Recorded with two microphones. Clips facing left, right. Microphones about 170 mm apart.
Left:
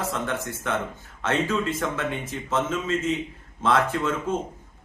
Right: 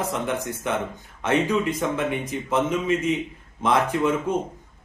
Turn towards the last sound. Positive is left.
turn(degrees=-15)  # may be behind; listen again after turning